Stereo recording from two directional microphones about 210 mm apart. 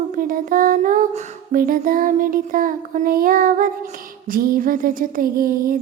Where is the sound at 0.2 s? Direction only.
40° right (ahead or behind).